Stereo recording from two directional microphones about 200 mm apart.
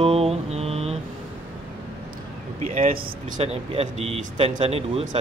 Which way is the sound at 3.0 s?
30° right (ahead or behind).